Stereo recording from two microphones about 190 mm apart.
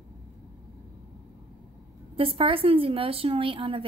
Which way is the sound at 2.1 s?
30° right (ahead or behind).